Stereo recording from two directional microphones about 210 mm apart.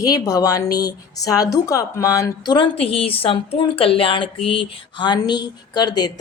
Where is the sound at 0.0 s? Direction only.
15° left (ahead or behind).